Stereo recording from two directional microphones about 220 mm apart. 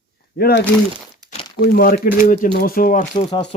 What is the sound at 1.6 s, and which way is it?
Speech, 45° left (ahead or behind).